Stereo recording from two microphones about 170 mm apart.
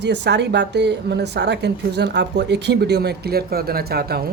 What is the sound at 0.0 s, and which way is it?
Speech, 90° right.